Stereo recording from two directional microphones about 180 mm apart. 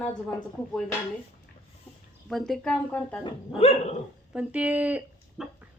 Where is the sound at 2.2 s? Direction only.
Centre (ahead or behind).